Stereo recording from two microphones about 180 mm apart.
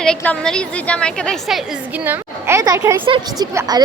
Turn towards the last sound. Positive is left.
turn(degrees=-20)  # may be behind; listen again after turning